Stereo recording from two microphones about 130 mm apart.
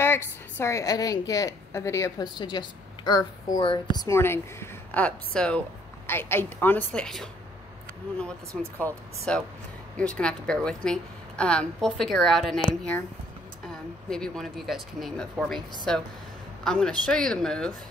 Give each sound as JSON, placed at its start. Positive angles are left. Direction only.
{"t": 0.0, "sound": "a woman's voice", "side_deg": 20}
{"t": 4.2, "sound": "speech", "side_deg": 20}
{"t": 8.5, "sound": "a woman's voice", "side_deg": 10}
{"t": 14.0, "sound": "a woman's voice", "side_deg": 5}